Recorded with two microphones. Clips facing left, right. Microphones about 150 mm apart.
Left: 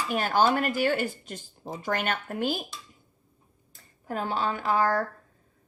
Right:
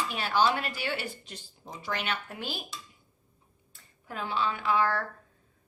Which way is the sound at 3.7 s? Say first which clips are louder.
Left 8 dB; 45° left (ahead or behind).